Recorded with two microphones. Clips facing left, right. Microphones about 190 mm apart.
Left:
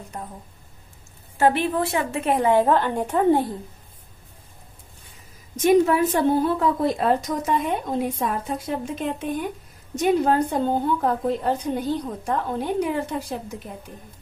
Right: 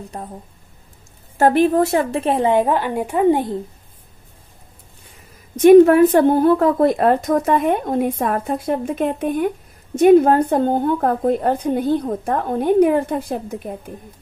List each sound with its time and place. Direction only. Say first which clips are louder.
0.1 s speech: right 3 dB; 30° right (ahead or behind)
1.4 s a woman's voice: right 6 dB; 45° right (ahead or behind); by 3.4 s 10° right (ahead or behind)
5.6 s a woman's voice: right 9 dB; 60° right (ahead or behind)